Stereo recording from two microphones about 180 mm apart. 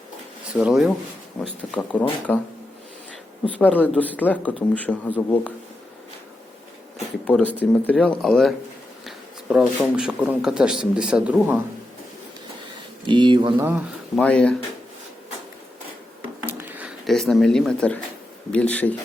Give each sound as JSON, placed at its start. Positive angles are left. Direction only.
{"t": 0.5, "sound": "speech", "side_deg": -5}
{"t": 3.4, "sound": "speech", "side_deg": 10}
{"t": 7.3, "sound": "speech", "side_deg": 5}
{"t": 13.1, "sound": "speech", "side_deg": -25}
{"t": 14.2, "sound": "speech", "side_deg": 5}
{"t": 16.5, "sound": "a sound", "side_deg": -10}
{"t": 17.1, "sound": "speech", "side_deg": 0}